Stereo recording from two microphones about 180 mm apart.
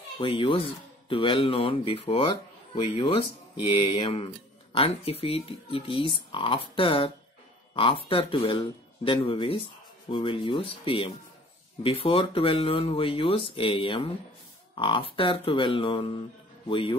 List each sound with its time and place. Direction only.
0.2 s speech: 30° left (ahead or behind)